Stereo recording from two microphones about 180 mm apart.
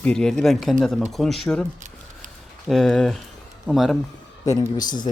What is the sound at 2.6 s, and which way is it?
Speech, centre (ahead or behind).